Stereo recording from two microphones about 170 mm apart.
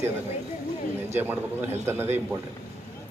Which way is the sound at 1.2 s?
10° right (ahead or behind).